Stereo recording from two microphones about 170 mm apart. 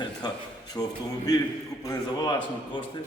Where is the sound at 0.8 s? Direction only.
10° left (ahead or behind).